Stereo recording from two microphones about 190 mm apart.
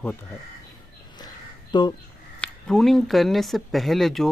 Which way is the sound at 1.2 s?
20° left (ahead or behind).